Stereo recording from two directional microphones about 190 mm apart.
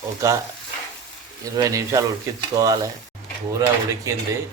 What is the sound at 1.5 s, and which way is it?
Speech, 15° right (ahead or behind).